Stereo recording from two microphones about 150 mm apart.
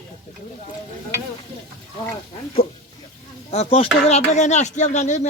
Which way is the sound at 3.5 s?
45° left (ahead or behind).